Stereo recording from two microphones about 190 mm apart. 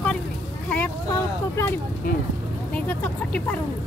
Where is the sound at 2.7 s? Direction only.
5° left (ahead or behind).